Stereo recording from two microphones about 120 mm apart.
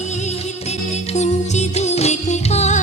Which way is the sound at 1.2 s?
70° left (ahead or behind).